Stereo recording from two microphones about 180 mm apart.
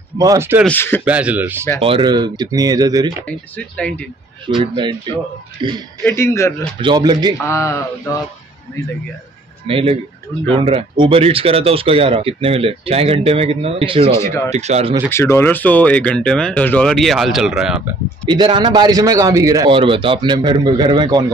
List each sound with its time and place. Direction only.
0.2 s speech: 15° right (ahead or behind)
0.7 s speech: 10° left (ahead or behind)
1.0 s speech: 10° right (ahead or behind)
1.8 s a man's voice: 30° right (ahead or behind)
3.3 s speech: 5° left (ahead or behind)
4.6 s a man's voice: 25° right (ahead or behind)
6.0 s speech: 15° left (ahead or behind)
6.8 s a man's voice: 25° right (ahead or behind)
7.4 s speech: 15° left (ahead or behind)
9.7 s speech: 30° right (ahead or behind)
14.1 s speech: 15° left (ahead or behind)
14.5 s speech: 40° right (ahead or behind)
15.0 s speech: 15° left (ahead or behind); by 17.8 s 5° right (ahead or behind)
18.3 s a man's voice: 25° right (ahead or behind)